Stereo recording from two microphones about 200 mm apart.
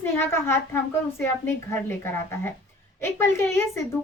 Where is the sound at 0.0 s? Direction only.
10° left (ahead or behind).